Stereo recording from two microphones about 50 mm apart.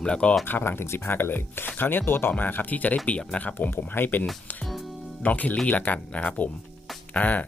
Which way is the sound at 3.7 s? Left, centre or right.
Left.